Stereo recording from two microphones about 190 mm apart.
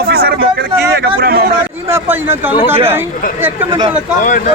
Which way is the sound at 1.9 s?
10° right (ahead or behind).